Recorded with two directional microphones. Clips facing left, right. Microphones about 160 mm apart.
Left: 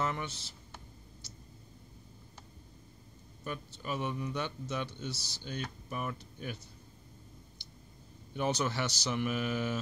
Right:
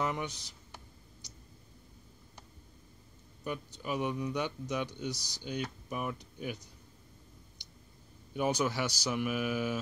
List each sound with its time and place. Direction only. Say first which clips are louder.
0.0 s speech: right 1 dB; 15° right (ahead or behind)
1.2 s tick: left 1 dB; 15° right (ahead or behind)
3.4 s speech: right 2 dB; 15° right (ahead or behind)
7.6 s clicking: left 2 dB; 15° right (ahead or behind)
8.3 s speech: right 2 dB; 10° right (ahead or behind)